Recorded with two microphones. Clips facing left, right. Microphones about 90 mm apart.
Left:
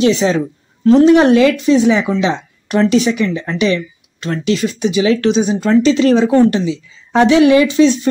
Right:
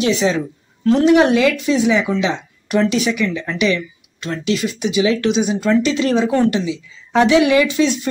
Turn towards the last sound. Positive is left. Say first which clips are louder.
# left 5 dB
turn(degrees=30)  # may be behind; listen again after turning